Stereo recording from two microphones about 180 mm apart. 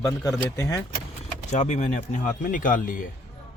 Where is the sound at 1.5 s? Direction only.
40° left (ahead or behind).